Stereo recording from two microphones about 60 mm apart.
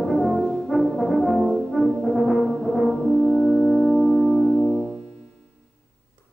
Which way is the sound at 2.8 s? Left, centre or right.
Centre.